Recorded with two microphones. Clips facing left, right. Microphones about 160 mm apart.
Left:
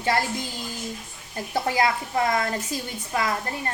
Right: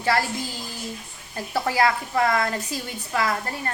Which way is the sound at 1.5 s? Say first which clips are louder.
Right 1 dB; 20° left (ahead or behind).